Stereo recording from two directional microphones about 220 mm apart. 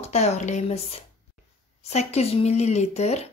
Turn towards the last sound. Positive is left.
turn(degrees=30)  # may be behind; listen again after turning